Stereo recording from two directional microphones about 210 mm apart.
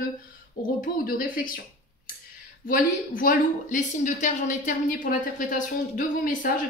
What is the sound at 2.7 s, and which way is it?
A woman's voice, 40° left (ahead or behind).